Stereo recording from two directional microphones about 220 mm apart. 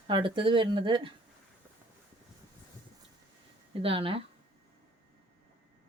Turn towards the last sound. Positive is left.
turn(degrees=-25)  # may be behind; listen again after turning